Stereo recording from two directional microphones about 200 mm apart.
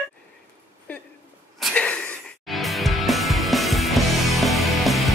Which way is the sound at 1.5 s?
5° left (ahead or behind).